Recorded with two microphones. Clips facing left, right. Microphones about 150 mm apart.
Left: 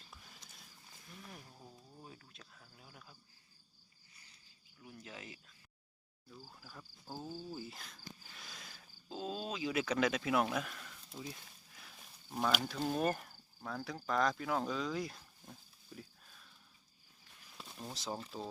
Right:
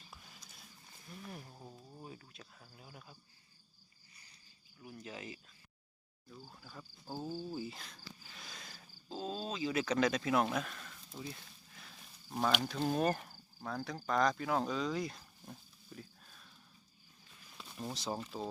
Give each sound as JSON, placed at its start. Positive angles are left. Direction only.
{"t": 1.3, "sound": "a sound", "side_deg": -15}
{"t": 2.0, "sound": "cricket", "side_deg": -5}
{"t": 4.9, "sound": "speech", "side_deg": 0}
{"t": 6.5, "sound": "speech", "side_deg": 0}
{"t": 7.1, "sound": "cricket", "side_deg": -15}
{"t": 7.6, "sound": "speech", "side_deg": 0}
{"t": 8.4, "sound": "a sound", "side_deg": 0}
{"t": 12.5, "sound": "speech", "side_deg": 0}
{"t": 17.9, "sound": "speech", "side_deg": 0}